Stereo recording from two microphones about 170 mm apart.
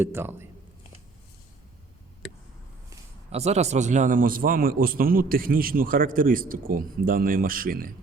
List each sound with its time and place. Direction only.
0.0 s speech: 15° right (ahead or behind)
3.3 s a man's voice: 40° right (ahead or behind); by 7.9 s 55° right (ahead or behind)